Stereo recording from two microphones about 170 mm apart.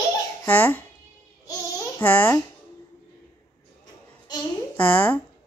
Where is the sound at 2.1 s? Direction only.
10° left (ahead or behind).